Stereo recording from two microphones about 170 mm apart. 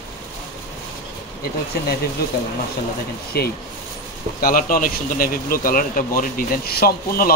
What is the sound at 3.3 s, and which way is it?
Speech, 70° left (ahead or behind).